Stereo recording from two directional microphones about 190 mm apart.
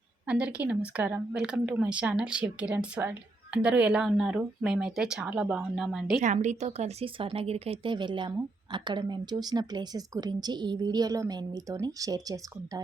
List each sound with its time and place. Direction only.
0.3 s a woman's voice: 5° right (ahead or behind)
6.2 s a woman's voice: 40° right (ahead or behind); by 12.8 s 20° right (ahead or behind)